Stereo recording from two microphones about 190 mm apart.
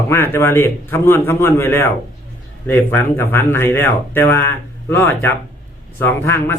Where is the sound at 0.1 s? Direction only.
10° left (ahead or behind).